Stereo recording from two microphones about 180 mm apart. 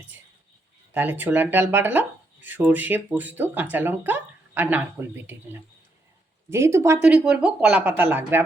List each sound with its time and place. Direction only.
0.9 s speech: 10° right (ahead or behind)